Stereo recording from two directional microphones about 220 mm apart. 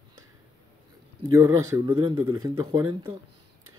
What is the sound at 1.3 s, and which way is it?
Speech, 15° right (ahead or behind).